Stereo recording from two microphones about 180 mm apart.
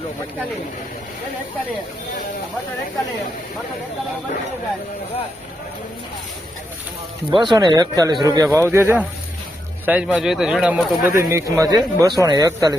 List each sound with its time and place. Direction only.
7.3 s speech: 25° right (ahead or behind); by 11.1 s 5° right (ahead or behind)
11.2 s speech: 15° right (ahead or behind)